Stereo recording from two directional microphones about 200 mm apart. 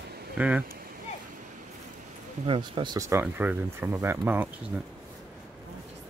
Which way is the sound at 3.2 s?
10° right (ahead or behind).